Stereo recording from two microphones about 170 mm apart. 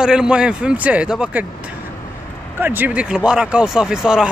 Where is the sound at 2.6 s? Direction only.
10° right (ahead or behind).